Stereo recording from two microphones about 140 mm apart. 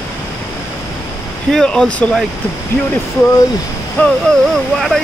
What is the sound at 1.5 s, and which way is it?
Speech, 5° left (ahead or behind).